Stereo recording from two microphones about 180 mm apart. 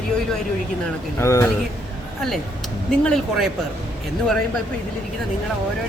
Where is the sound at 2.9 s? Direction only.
Centre (ahead or behind).